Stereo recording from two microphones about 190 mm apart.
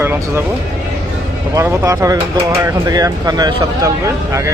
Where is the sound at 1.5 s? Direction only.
15° right (ahead or behind).